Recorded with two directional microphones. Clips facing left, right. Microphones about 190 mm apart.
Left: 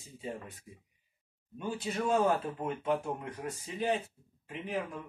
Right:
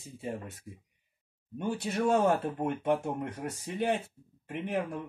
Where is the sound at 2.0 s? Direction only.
50° right (ahead or behind).